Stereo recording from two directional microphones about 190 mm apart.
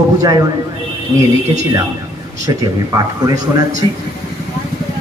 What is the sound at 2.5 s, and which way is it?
Speech, 20° right (ahead or behind).